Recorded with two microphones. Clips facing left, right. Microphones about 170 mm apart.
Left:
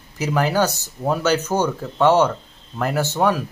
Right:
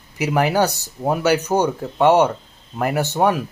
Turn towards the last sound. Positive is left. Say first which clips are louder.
# right 1 dB
turn(degrees=-15)  # may be behind; listen again after turning